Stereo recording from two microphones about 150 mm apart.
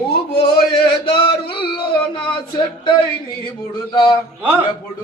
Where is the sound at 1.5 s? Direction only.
35° left (ahead or behind).